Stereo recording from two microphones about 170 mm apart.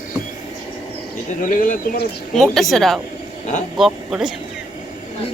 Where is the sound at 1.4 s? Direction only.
55° left (ahead or behind).